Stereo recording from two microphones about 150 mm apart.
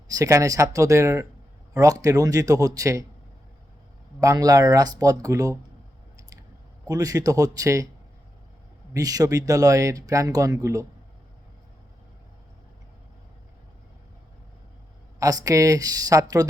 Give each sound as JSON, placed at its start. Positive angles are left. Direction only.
{"t": 0.1, "sound": "speech", "side_deg": -20}
{"t": 4.2, "sound": "speech", "side_deg": -25}
{"t": 6.8, "sound": "speech", "side_deg": -25}
{"t": 8.9, "sound": "speech", "side_deg": -25}
{"t": 15.2, "sound": "speech", "side_deg": -25}